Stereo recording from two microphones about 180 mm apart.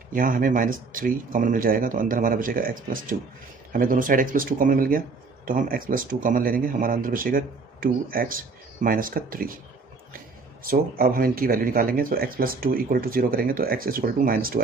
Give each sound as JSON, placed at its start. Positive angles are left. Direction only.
{"t": 0.1, "sound": "speech", "side_deg": -50}
{"t": 10.6, "sound": "speech", "side_deg": -55}